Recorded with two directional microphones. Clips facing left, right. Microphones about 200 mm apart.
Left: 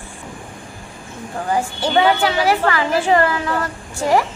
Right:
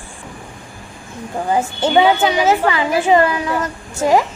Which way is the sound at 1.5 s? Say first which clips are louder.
Right 3 dB; 20° right (ahead or behind).